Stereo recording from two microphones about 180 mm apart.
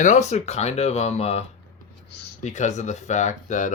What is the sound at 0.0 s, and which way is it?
Speech, 40° left (ahead or behind).